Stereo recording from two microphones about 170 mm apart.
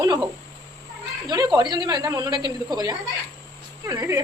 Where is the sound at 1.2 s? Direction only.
25° right (ahead or behind).